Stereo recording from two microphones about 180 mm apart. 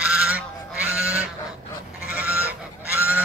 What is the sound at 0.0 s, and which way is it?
Goose, 5° right (ahead or behind).